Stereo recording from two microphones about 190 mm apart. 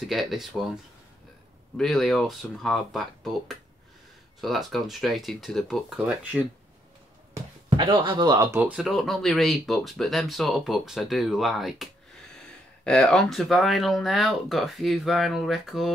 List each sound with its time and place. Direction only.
0.0 s speech: centre (ahead or behind)
1.8 s speech: centre (ahead or behind)
7.7 s speech: 25° right (ahead or behind)
8.5 s speech: 5° right (ahead or behind)